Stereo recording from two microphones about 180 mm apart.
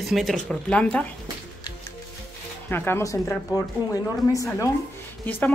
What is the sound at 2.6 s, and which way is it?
Speech, 10° left (ahead or behind).